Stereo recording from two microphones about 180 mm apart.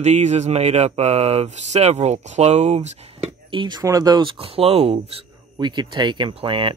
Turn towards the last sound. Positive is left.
turn(degrees=-30)  # may be behind; listen again after turning